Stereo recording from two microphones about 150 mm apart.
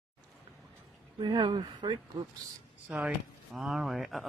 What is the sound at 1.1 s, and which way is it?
Speech, 30° right (ahead or behind).